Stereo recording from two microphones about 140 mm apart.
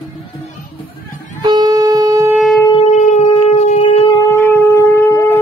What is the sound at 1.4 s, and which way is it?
Wind instrument, 30° right (ahead or behind).